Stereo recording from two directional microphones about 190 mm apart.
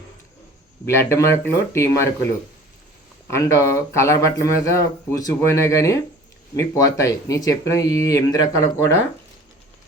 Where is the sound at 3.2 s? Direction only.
15° left (ahead or behind).